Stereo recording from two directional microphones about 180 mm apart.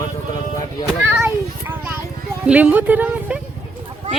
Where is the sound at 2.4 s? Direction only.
10° right (ahead or behind).